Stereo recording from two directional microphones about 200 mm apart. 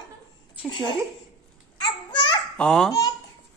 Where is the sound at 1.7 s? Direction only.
25° left (ahead or behind).